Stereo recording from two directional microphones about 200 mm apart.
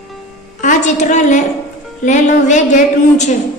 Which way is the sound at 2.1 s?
35° left (ahead or behind).